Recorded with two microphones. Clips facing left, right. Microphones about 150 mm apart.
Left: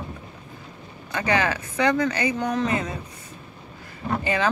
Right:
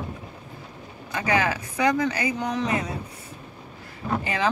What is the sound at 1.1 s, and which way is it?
Speech, 5° right (ahead or behind).